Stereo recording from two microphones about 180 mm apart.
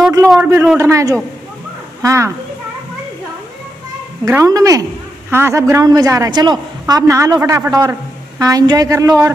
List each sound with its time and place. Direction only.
0.3 s a woman's voice: 10° right (ahead or behind)
4.3 s a woman's voice: 15° right (ahead or behind)